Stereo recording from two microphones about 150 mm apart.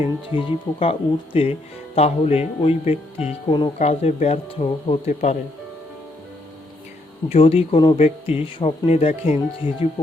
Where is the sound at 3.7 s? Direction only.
45° left (ahead or behind).